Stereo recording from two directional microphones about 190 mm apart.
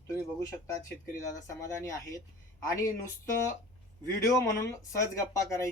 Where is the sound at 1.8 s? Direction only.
15° left (ahead or behind).